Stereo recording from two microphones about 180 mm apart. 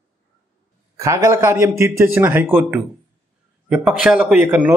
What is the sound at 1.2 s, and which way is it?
Speech, 15° right (ahead or behind).